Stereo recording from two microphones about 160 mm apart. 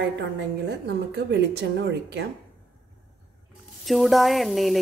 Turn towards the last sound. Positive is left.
turn(degrees=0)  # may be behind; listen again after turning